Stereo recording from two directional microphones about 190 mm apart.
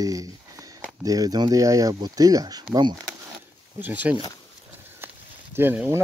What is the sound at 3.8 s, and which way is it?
Speech, 10° right (ahead or behind).